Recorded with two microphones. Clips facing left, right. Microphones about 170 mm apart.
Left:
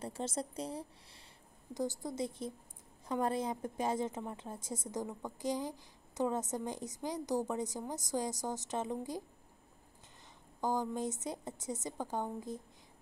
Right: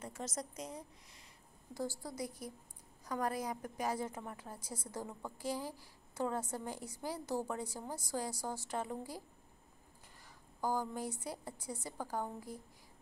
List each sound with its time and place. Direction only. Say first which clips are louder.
0.0 s a woman's voice: left 5 dB; 30° left (ahead or behind)
1.7 s a woman's voice: left 4 dB; 20° left (ahead or behind)
10.6 s a woman's voice: left 3 dB; 20° left (ahead or behind)